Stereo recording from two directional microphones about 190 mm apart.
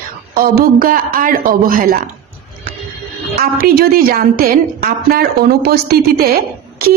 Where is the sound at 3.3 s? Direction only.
55° right (ahead or behind).